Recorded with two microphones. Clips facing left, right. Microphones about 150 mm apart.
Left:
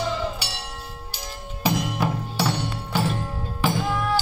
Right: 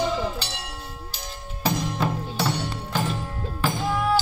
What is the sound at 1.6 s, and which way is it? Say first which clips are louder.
Music: left 1 dB; 10° left (ahead or behind).